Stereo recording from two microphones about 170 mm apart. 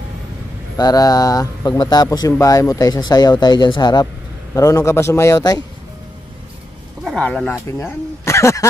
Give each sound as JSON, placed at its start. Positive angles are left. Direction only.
{"t": 0.7, "sound": "a man's voice", "side_deg": 20}
{"t": 7.2, "sound": "speech", "side_deg": 5}
{"t": 7.6, "sound": "speech", "side_deg": 15}